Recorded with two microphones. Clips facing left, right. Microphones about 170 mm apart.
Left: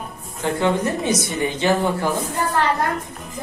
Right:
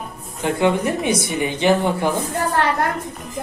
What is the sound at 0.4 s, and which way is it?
Speech, 15° right (ahead or behind).